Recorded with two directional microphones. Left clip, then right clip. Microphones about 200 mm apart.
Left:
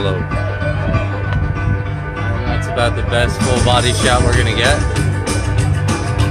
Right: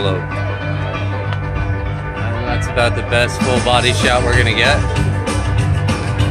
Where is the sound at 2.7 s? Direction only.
Centre (ahead or behind).